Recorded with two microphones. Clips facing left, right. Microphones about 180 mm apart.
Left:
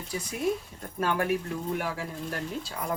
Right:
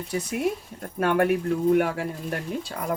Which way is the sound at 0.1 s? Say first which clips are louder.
Right 3 dB; 65° right (ahead or behind).